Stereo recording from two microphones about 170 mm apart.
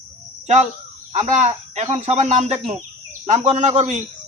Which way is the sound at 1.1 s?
40° right (ahead or behind).